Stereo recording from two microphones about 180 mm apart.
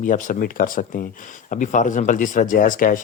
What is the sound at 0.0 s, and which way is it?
Speech, 45° left (ahead or behind).